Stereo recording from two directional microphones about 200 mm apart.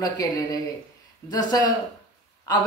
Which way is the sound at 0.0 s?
20° left (ahead or behind).